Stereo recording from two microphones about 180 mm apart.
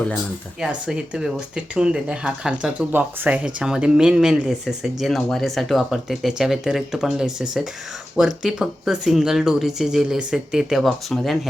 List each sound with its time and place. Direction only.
0.6 s speech: 5° right (ahead or behind)